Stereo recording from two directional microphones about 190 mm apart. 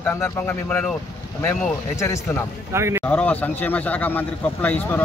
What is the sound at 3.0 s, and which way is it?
Speech, 10° left (ahead or behind).